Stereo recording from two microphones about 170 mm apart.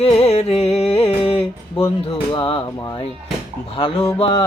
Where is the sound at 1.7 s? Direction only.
20° left (ahead or behind).